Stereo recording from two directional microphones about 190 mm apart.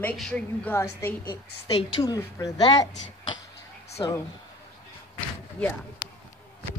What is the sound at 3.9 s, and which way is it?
Speech, 15° left (ahead or behind).